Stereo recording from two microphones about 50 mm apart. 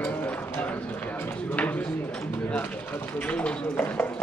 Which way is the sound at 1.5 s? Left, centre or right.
Left.